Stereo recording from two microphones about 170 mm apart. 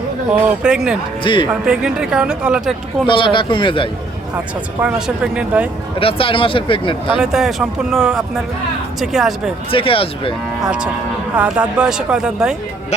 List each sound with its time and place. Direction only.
0.6 s speech: 5° right (ahead or behind)
1.2 s speech: 30° left (ahead or behind)
1.6 s speech: 5° right (ahead or behind)
3.1 s speech: 30° left (ahead or behind)
4.8 s speech: 5° right (ahead or behind)
6.0 s speech: 30° left (ahead or behind)
7.2 s speech: 5° right (ahead or behind)
9.7 s speech: 30° left (ahead or behind)
10.6 s speech: 5° right (ahead or behind)